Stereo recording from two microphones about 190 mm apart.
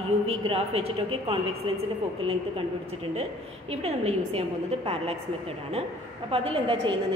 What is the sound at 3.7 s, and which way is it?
A woman's voice, 35° right (ahead or behind).